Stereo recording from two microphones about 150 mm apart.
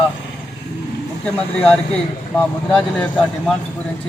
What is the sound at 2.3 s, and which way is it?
A man's voice, 10° left (ahead or behind).